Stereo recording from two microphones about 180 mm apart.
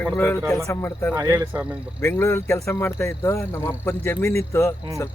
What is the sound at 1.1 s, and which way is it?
Speech, 10° right (ahead or behind).